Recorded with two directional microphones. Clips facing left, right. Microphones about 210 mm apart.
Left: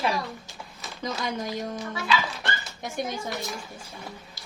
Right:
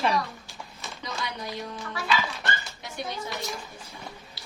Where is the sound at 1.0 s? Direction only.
45° left (ahead or behind).